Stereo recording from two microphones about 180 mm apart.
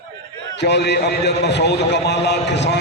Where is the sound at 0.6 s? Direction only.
70° left (ahead or behind).